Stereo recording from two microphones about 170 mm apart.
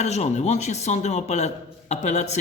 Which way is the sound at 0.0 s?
40° left (ahead or behind).